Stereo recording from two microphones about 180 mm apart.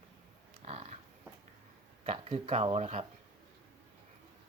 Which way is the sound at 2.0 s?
35° right (ahead or behind).